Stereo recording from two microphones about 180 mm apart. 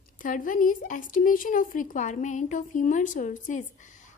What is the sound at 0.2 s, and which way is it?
A woman's voice, 50° left (ahead or behind).